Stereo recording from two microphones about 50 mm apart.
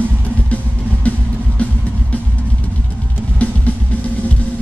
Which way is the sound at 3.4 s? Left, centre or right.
Left.